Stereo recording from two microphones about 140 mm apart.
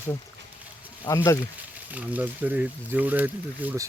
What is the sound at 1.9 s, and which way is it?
Speech, 10° right (ahead or behind).